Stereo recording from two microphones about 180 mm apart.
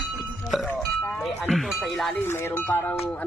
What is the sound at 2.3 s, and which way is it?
Speech, 15° left (ahead or behind).